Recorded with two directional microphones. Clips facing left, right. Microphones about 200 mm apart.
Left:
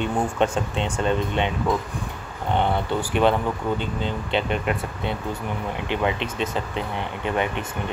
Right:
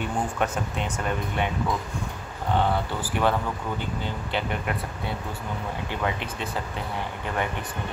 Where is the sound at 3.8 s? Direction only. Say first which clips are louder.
Left 4 dB; 20° left (ahead or behind).